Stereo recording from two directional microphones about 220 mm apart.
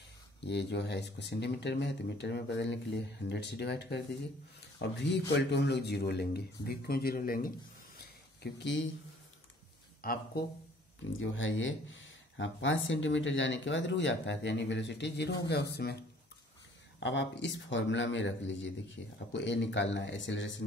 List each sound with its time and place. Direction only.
0.4 s speech: 50° left (ahead or behind)
8.0 s a sound: 45° left (ahead or behind)
10.0 s speech: 40° left (ahead or behind)
11.1 s speech: 60° left (ahead or behind)
17.0 s speech: 50° left (ahead or behind)